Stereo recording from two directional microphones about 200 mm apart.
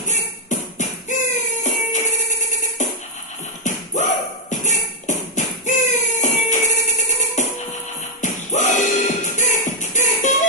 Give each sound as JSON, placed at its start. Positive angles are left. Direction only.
{"t": 0.1, "sound": "music", "side_deg": 40}
{"t": 3.6, "sound": "a sound", "side_deg": 40}
{"t": 8.2, "sound": "music", "side_deg": 35}